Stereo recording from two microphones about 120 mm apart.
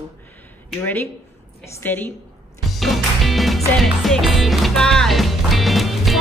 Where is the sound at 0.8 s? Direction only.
15° left (ahead or behind).